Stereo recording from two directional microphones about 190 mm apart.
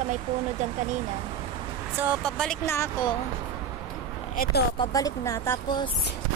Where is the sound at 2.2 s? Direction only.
5° left (ahead or behind).